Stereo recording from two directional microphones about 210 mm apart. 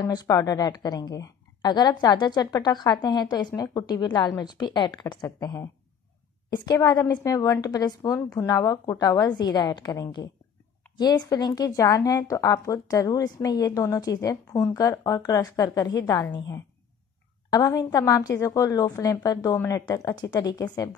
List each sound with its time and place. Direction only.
0.0 s a woman's voice: 20° left (ahead or behind)